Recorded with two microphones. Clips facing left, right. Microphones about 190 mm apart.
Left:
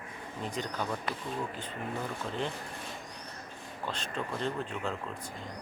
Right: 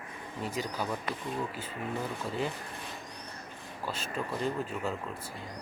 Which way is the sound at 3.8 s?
5° right (ahead or behind).